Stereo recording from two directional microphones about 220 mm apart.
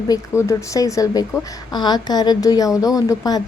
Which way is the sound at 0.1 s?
15° left (ahead or behind).